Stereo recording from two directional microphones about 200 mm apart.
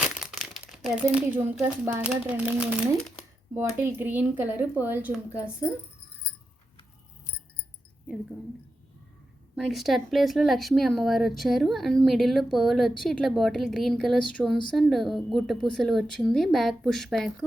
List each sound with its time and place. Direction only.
0.0 s speech: 5° right (ahead or behind)
9.6 s speech: centre (ahead or behind)